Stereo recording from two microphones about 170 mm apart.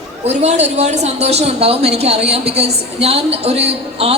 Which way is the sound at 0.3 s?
40° right (ahead or behind).